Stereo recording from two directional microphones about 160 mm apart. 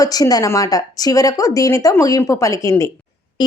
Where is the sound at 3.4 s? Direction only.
30° left (ahead or behind).